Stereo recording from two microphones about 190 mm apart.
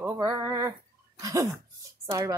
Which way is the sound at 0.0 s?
15° right (ahead or behind).